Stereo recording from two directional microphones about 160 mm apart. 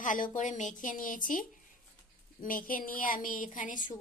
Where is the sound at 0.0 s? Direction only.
55° left (ahead or behind).